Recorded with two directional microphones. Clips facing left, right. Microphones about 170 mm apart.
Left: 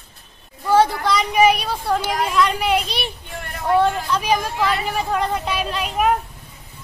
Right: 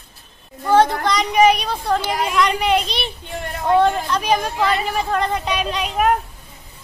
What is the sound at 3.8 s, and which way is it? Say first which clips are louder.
Speech: right 2 dB; 5° left (ahead or behind).